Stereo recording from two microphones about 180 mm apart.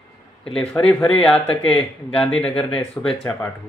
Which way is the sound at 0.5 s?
5° left (ahead or behind).